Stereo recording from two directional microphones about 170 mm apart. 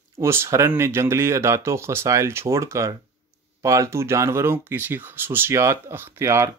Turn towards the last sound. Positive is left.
turn(degrees=-15)  # may be behind; listen again after turning